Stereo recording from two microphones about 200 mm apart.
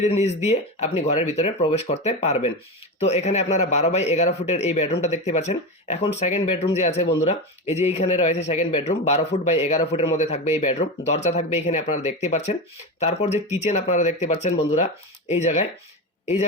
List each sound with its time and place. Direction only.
0.0 s speech: 35° left (ahead or behind)